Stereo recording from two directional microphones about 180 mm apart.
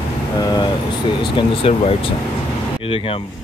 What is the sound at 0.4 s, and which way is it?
Speech, 25° left (ahead or behind).